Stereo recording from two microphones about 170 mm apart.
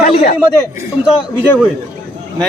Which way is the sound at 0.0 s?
35° left (ahead or behind).